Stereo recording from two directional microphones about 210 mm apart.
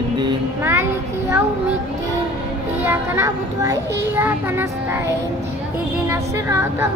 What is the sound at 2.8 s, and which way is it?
Speech, 10° right (ahead or behind).